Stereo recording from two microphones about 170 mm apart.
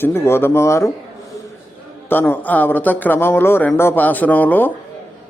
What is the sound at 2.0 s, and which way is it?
A man's voice, 10° left (ahead or behind).